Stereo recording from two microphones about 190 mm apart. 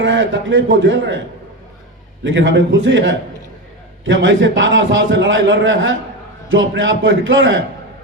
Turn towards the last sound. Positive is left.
turn(degrees=-90)